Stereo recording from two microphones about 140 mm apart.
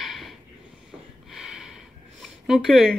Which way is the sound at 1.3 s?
5° right (ahead or behind).